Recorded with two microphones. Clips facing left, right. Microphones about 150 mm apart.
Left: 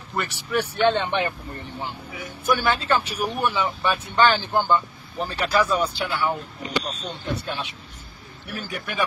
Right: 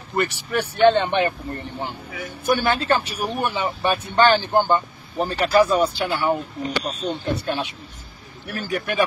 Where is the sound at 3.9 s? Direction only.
45° right (ahead or behind).